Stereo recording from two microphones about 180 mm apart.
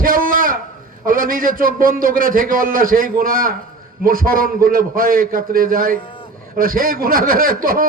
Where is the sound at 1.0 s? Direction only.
50° right (ahead or behind).